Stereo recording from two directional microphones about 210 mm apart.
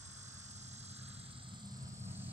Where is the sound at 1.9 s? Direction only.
10° right (ahead or behind).